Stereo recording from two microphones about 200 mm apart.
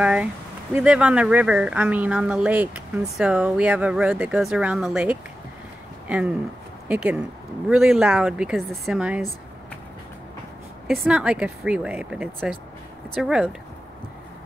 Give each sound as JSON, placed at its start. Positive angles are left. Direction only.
{"t": 0.0, "sound": "speech", "side_deg": -5}
{"t": 10.9, "sound": "speech", "side_deg": -5}